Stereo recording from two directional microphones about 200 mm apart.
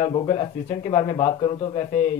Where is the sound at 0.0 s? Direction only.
30° left (ahead or behind).